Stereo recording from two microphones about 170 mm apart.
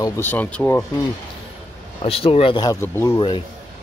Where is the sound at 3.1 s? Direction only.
30° left (ahead or behind).